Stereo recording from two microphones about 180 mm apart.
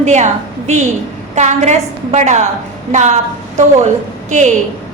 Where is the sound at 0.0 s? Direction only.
40° right (ahead or behind).